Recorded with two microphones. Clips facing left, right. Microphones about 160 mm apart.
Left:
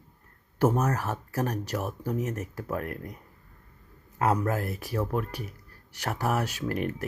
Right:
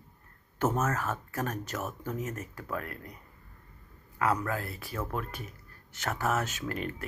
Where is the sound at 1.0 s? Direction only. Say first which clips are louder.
Left 2 dB; 40° left (ahead or behind).